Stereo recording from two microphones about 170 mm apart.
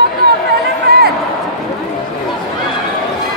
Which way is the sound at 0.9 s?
75° right (ahead or behind).